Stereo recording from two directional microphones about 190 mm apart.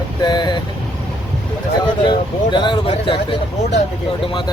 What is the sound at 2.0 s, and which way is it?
Speech, 25° left (ahead or behind).